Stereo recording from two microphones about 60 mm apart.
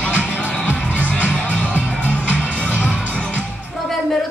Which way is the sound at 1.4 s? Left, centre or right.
Left.